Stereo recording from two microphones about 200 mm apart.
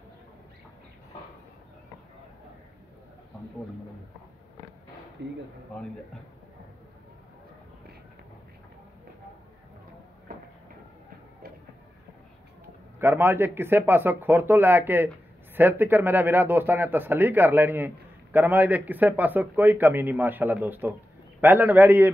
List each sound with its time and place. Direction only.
5.2 s speech: 60° right (ahead or behind)
10.3 s a sound: 45° right (ahead or behind)
13.0 s a man's voice: 10° right (ahead or behind)